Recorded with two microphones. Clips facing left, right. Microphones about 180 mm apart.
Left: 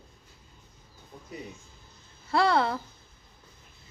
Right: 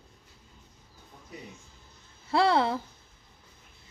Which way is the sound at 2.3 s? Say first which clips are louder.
Even; 25° right (ahead or behind).